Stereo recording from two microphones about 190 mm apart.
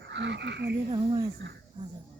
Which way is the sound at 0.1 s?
65° right (ahead or behind).